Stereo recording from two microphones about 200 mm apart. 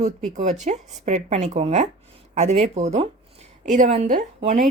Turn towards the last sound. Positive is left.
turn(degrees=-30)  # may be behind; listen again after turning